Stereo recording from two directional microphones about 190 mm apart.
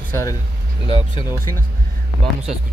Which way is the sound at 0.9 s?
25° left (ahead or behind).